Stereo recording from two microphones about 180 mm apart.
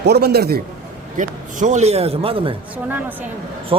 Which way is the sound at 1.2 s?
45° right (ahead or behind).